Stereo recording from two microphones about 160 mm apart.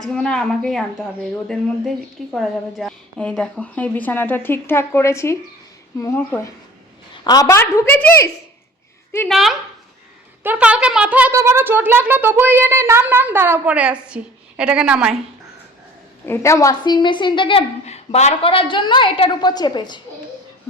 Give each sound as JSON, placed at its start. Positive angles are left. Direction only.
{"t": 0.0, "sound": "a woman's voice", "side_deg": 5}
{"t": 9.3, "sound": "a woman's voice", "side_deg": 0}
{"t": 16.2, "sound": "a woman's voice", "side_deg": 15}
{"t": 17.8, "sound": "a woman's voice", "side_deg": 45}